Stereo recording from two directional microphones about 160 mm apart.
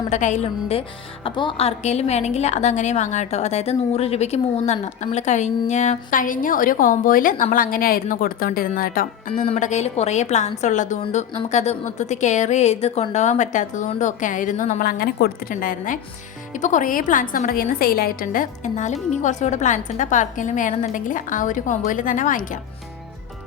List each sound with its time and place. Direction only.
0.1 s speech: 50° left (ahead or behind)
0.8 s a woman's voice: 35° left (ahead or behind); by 9.0 s 60° left (ahead or behind)
9.5 s speech: 45° left (ahead or behind); by 16.0 s 60° left (ahead or behind)
16.6 s a woman's voice: 50° left (ahead or behind)